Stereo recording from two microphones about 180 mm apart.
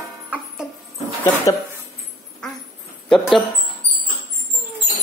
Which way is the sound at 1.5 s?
20° left (ahead or behind).